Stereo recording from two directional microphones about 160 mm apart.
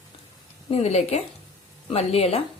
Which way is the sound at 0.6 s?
40° left (ahead or behind).